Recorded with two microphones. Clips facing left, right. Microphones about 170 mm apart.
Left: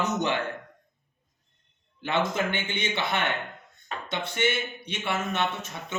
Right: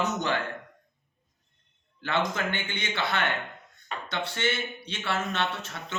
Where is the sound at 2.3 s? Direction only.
20° left (ahead or behind).